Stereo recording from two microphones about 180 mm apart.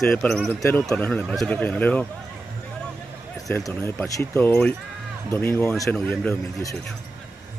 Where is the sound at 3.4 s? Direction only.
20° left (ahead or behind).